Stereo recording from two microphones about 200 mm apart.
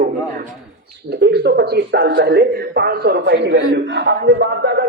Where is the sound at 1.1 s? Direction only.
55° right (ahead or behind).